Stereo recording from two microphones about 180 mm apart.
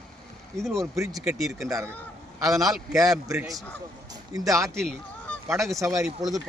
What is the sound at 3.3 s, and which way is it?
Speech, 20° right (ahead or behind).